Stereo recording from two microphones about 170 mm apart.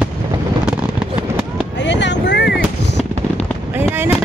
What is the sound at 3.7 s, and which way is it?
Fireworks, 10° right (ahead or behind).